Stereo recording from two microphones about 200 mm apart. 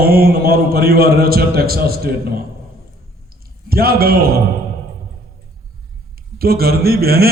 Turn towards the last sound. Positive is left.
turn(degrees=-50)  # may be behind; listen again after turning